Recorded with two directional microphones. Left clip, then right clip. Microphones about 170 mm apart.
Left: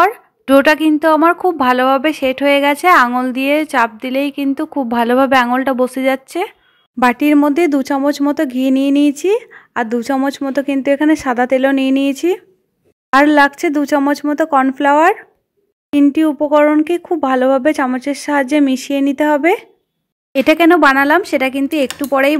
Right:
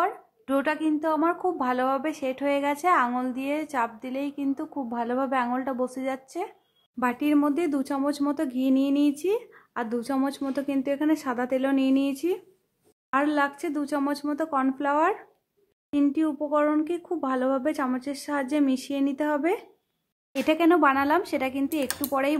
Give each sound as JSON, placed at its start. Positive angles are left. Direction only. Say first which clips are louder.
{"t": 0.0, "sound": "speech", "louder": "left 14 dB", "side_deg": 35}